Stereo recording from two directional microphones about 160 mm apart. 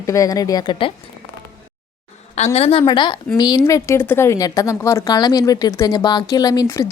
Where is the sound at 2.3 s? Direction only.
45° left (ahead or behind).